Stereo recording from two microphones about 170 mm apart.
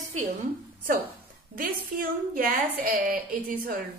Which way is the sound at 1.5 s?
55° right (ahead or behind).